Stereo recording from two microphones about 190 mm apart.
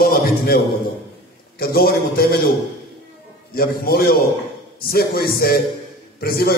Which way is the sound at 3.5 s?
50° left (ahead or behind).